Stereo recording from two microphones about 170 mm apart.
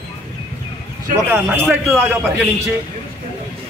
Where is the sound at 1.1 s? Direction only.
15° right (ahead or behind).